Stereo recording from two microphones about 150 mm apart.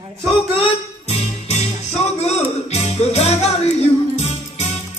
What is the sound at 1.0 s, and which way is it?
Music, 45° left (ahead or behind).